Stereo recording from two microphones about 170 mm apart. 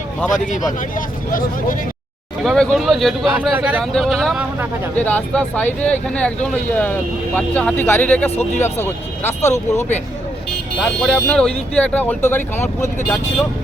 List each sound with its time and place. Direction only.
0.4 s speech: 50° left (ahead or behind)
2.4 s speech: centre (ahead or behind)
9.4 s speech: 40° left (ahead or behind)
10.8 s speech: 5° left (ahead or behind)